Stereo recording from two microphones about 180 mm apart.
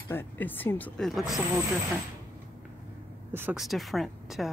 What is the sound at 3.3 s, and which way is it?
Speech, 5° right (ahead or behind).